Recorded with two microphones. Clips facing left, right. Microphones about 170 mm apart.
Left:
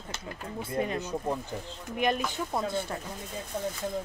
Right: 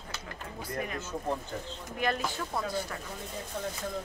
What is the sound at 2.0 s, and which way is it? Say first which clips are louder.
Speech: left 3 dB; 20° left (ahead or behind).